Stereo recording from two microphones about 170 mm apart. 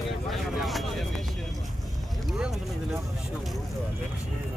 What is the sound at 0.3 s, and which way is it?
Vehicle, centre (ahead or behind).